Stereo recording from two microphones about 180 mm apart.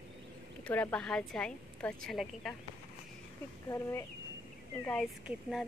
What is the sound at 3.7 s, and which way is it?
A woman's voice, 15° left (ahead or behind).